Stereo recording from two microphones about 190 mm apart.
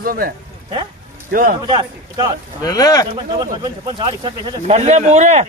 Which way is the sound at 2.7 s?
20° left (ahead or behind).